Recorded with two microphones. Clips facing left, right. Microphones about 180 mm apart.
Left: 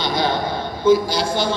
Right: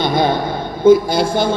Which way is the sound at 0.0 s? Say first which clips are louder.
Right 5 dB; 55° right (ahead or behind).